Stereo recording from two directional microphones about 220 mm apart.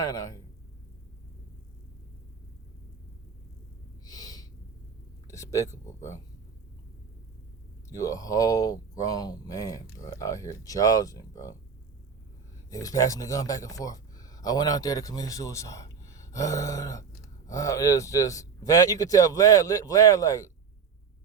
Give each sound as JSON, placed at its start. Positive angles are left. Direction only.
{"t": 0.0, "sound": "speech", "side_deg": 15}
{"t": 4.0, "sound": "snort", "side_deg": 15}
{"t": 5.3, "sound": "speech", "side_deg": 15}
{"t": 7.9, "sound": "speech", "side_deg": 15}
{"t": 12.7, "sound": "speech", "side_deg": 15}